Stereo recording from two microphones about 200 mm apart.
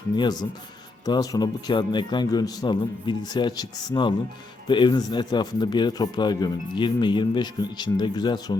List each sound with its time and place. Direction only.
1.0 s a man's voice: 20° left (ahead or behind)